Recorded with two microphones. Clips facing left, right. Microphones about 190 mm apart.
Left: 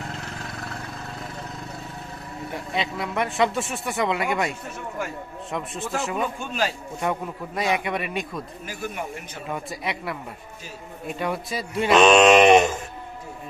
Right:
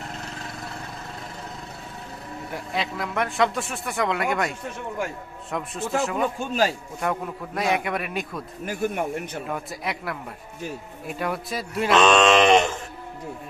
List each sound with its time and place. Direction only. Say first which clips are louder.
2.7 s a man's voice: even; centre (ahead or behind)
8.6 s speech: right 9 dB; 55° right (ahead or behind)
9.5 s a man's voice: left 4 dB; centre (ahead or behind)
11.9 s mantra: left 3 dB; 15° left (ahead or behind)